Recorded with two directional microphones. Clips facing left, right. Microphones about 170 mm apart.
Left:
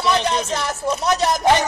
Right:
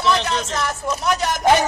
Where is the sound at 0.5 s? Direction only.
30° left (ahead or behind).